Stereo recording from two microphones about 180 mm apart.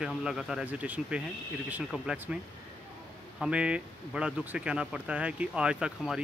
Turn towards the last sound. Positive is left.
turn(degrees=-5)  # may be behind; listen again after turning